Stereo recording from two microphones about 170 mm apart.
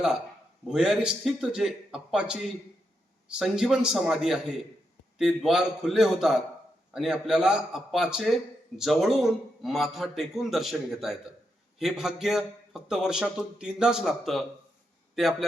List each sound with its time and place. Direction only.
0.7 s a man's voice: 5° right (ahead or behind)